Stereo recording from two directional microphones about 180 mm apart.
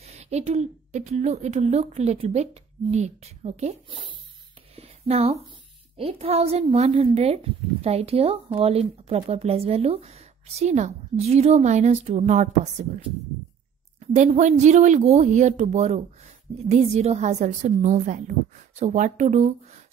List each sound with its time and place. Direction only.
0.0 s speech: 35° right (ahead or behind)
4.7 s a sound: 35° right (ahead or behind)
5.9 s speech: 35° right (ahead or behind)